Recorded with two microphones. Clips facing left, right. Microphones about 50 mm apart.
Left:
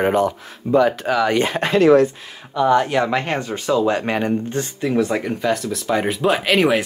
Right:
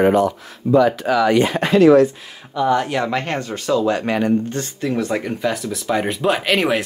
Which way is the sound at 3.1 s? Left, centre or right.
Centre.